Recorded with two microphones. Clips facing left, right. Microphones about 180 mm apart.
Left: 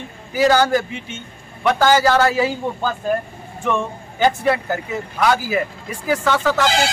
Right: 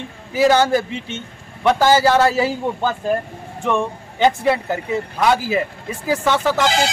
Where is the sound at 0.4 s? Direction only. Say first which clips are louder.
Right 1 dB; 25° right (ahead or behind).